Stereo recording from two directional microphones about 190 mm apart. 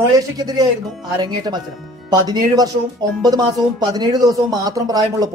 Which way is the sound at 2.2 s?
20° right (ahead or behind).